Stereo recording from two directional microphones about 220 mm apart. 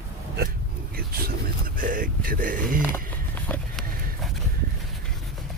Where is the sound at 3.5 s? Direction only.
5° left (ahead or behind).